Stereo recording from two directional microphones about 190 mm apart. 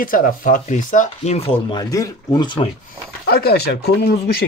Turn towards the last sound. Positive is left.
turn(degrees=55)  # may be behind; listen again after turning